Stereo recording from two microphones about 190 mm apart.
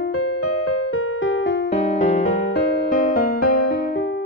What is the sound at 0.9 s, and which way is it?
Music, 90° left.